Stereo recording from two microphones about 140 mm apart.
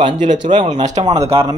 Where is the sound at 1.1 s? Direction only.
45° right (ahead or behind).